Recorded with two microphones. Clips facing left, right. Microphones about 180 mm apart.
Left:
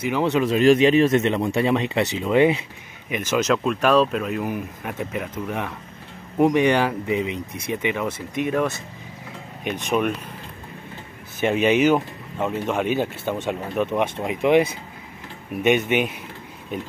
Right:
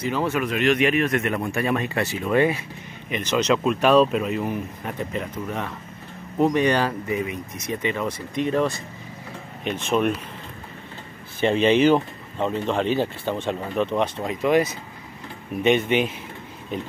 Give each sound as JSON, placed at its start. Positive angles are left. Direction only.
{"t": 0.1, "sound": "speech", "side_deg": 20}
{"t": 3.1, "sound": "speech", "side_deg": 5}
{"t": 6.3, "sound": "speech", "side_deg": 15}
{"t": 9.7, "sound": "speech", "side_deg": 15}
{"t": 11.4, "sound": "speech", "side_deg": 10}